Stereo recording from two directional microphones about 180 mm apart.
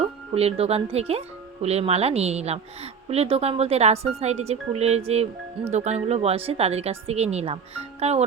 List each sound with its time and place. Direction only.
0.0 s speech: 35° right (ahead or behind)